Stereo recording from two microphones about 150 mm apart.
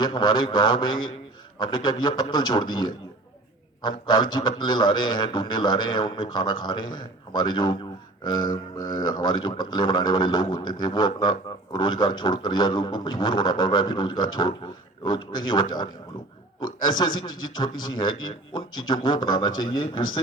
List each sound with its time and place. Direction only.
0.0 s a man's voice: 30° left (ahead or behind)
16.8 s a man's voice: 30° left (ahead or behind)